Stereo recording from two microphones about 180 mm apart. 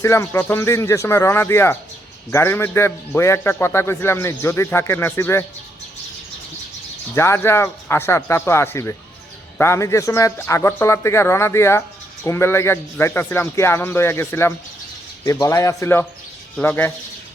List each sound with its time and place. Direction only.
0.0 s a man's voice: 15° left (ahead or behind)
7.1 s a man's voice: 15° left (ahead or behind)